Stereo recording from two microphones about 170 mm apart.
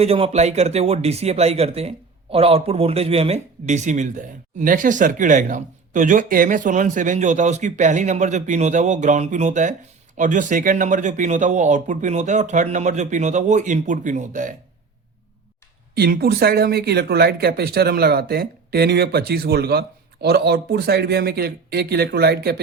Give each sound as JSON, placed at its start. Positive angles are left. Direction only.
{"t": 0.0, "sound": "speech", "side_deg": -35}
{"t": 16.0, "sound": "speech", "side_deg": -65}